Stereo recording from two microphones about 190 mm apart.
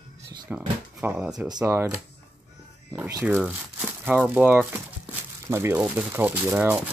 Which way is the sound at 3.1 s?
15° right (ahead or behind).